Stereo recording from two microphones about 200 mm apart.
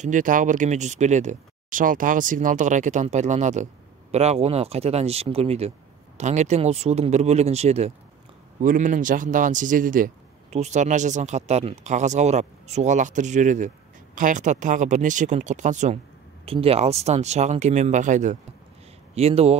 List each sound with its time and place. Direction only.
0.0 s speech: 40° right (ahead or behind)